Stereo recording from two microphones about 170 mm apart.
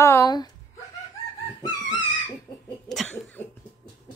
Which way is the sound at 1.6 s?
20° left (ahead or behind).